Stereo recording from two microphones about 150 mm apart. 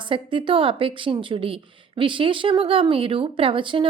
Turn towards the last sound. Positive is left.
turn(degrees=-35)  # may be behind; listen again after turning